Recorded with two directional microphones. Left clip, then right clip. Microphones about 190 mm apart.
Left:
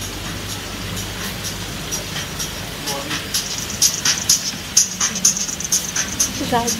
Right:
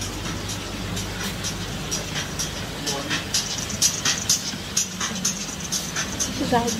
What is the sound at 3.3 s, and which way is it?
Music, 20° right (ahead or behind).